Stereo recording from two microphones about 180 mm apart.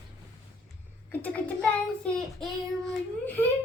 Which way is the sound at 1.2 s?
10° left (ahead or behind).